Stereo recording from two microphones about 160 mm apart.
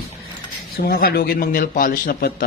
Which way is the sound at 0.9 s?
70° left (ahead or behind).